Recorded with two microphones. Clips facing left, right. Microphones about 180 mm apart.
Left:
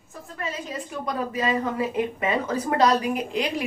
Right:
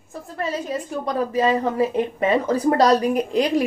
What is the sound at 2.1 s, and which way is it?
A woman's voice, 35° right (ahead or behind).